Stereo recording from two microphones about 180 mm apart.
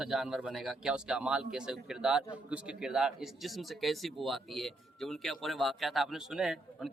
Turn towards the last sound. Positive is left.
turn(degrees=0)  # may be behind; listen again after turning